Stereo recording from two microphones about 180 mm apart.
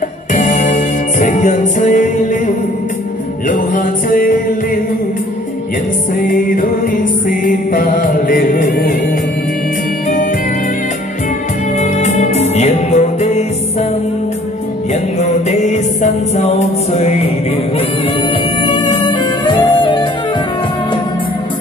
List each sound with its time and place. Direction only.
0.3 s music: 40° left (ahead or behind)
6.2 s music: 50° left (ahead or behind)
11.8 s music: 40° left (ahead or behind)
15.1 s music: 40° left (ahead or behind)
18.6 s music: 25° left (ahead or behind)